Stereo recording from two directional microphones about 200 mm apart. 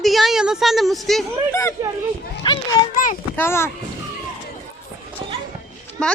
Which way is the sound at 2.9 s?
40° left (ahead or behind).